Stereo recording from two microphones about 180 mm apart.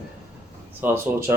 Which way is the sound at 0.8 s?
15° right (ahead or behind).